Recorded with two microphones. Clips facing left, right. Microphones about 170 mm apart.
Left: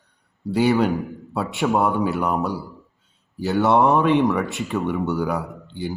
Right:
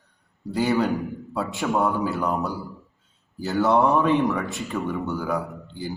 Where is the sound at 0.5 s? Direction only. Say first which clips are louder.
Left 4 dB; 70° left (ahead or behind).